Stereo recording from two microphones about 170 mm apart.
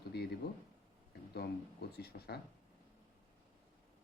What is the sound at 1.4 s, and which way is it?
Speech, 70° left (ahead or behind).